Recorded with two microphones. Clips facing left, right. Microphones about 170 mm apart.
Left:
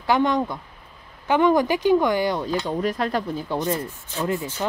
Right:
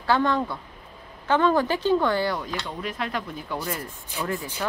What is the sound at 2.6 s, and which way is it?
Speech, 40° left (ahead or behind).